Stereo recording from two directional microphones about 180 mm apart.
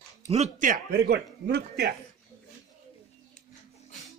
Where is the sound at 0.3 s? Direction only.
40° right (ahead or behind).